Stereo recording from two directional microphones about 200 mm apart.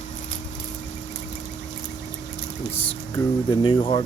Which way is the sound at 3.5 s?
25° left (ahead or behind).